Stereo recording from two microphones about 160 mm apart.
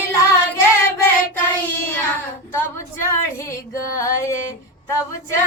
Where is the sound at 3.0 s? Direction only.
20° left (ahead or behind).